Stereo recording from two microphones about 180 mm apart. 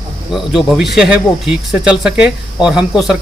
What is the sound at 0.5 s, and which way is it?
A man's voice, centre (ahead or behind).